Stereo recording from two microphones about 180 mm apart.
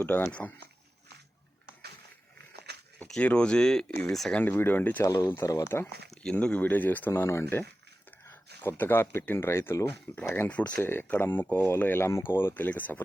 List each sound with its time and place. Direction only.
0.0 s speech: 10° left (ahead or behind)
2.7 s a sound: 65° right (ahead or behind)
3.0 s speech: 5° left (ahead or behind)
8.6 s speech: 10° left (ahead or behind)